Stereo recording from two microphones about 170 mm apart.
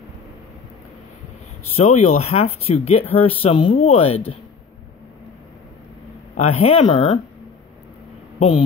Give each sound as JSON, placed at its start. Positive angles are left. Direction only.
{"t": 1.8, "sound": "speech", "side_deg": 40}
{"t": 6.3, "sound": "speech", "side_deg": 40}
{"t": 8.4, "sound": "speech", "side_deg": 30}